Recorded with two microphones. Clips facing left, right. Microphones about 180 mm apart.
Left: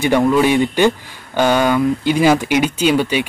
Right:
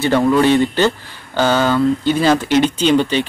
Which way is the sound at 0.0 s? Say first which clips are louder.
Even; 10° left (ahead or behind).